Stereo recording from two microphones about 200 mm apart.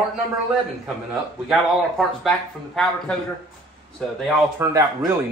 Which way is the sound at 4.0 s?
Centre (ahead or behind).